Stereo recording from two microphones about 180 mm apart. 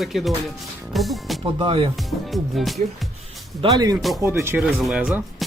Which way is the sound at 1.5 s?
30° right (ahead or behind).